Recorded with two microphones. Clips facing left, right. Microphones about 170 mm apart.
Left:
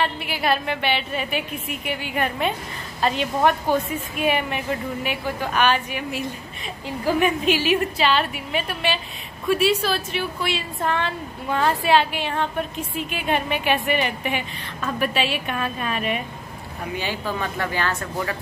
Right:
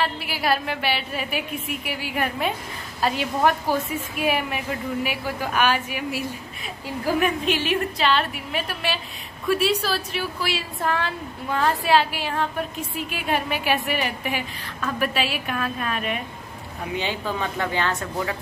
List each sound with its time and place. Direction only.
0.0 s a woman's voice: centre (ahead or behind)
16.9 s speech: 20° right (ahead or behind)